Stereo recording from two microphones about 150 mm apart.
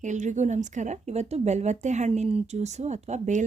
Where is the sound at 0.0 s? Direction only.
55° right (ahead or behind).